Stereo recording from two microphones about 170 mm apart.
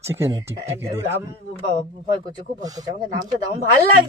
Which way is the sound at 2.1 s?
30° right (ahead or behind).